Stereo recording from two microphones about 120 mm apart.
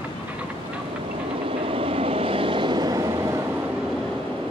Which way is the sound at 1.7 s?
50° right (ahead or behind).